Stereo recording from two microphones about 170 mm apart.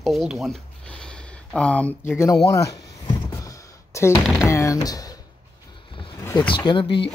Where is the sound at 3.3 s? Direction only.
20° left (ahead or behind).